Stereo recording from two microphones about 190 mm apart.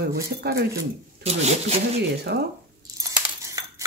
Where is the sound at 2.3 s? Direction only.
60° right (ahead or behind).